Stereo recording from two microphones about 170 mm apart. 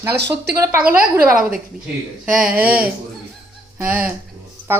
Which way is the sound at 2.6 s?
10° right (ahead or behind).